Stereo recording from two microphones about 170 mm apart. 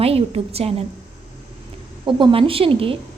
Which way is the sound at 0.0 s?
35° right (ahead or behind).